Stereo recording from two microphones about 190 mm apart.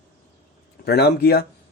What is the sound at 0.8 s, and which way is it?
Speech, 60° left (ahead or behind).